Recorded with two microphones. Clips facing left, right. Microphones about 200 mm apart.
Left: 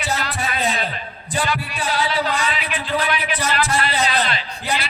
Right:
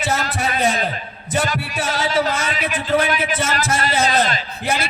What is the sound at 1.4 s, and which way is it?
Music, 45° right (ahead or behind).